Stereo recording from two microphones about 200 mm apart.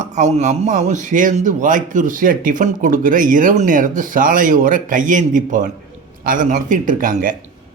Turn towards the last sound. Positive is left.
turn(degrees=-40)  # may be behind; listen again after turning